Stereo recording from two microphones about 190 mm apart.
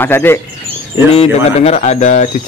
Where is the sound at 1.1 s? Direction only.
35° left (ahead or behind).